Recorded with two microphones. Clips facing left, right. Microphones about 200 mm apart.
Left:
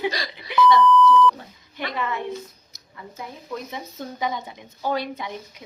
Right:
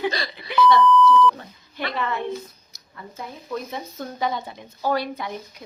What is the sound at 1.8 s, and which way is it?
Speech, 15° left (ahead or behind).